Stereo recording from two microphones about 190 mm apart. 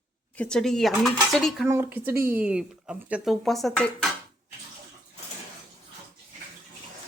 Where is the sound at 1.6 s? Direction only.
10° right (ahead or behind).